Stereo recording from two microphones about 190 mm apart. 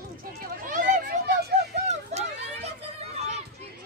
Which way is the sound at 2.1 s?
35° right (ahead or behind).